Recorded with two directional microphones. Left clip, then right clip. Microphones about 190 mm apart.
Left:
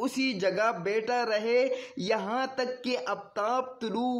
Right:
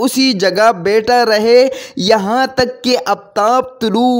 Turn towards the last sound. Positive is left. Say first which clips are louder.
# right 17 dB
turn(degrees=-50)  # may be behind; listen again after turning